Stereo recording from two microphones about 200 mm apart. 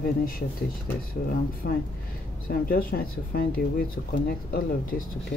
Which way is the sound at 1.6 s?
55° left (ahead or behind).